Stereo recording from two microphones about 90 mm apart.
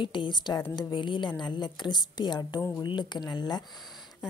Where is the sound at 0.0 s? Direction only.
65° left (ahead or behind).